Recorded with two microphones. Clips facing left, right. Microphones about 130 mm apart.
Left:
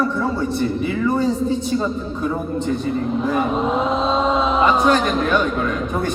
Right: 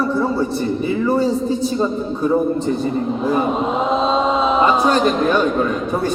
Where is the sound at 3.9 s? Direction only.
Centre (ahead or behind).